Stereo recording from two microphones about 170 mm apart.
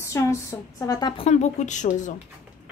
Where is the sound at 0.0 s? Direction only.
15° left (ahead or behind); by 2.1 s 45° left (ahead or behind).